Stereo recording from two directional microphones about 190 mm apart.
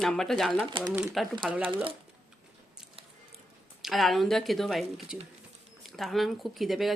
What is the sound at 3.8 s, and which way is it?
Speech, centre (ahead or behind).